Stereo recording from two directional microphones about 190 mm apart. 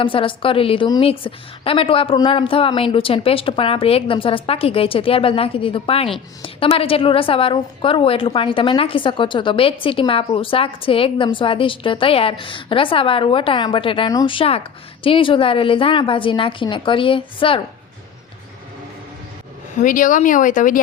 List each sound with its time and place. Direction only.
0.0 s a woman's voice: 25° left (ahead or behind)
19.8 s speech: 45° left (ahead or behind)